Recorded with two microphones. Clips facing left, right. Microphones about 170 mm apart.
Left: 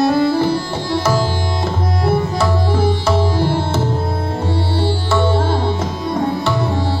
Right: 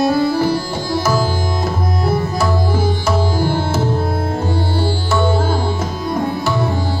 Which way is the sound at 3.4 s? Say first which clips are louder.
Even; 30° left (ahead or behind).